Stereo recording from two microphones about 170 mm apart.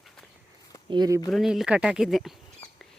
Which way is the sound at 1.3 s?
Centre (ahead or behind).